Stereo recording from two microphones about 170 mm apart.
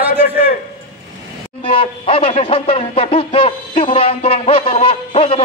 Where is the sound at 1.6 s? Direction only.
35° left (ahead or behind).